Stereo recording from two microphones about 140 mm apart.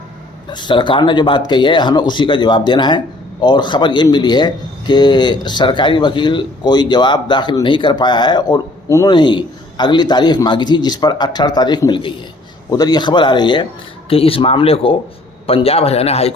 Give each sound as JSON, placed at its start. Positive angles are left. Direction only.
{"t": 0.5, "sound": "speech", "side_deg": 35}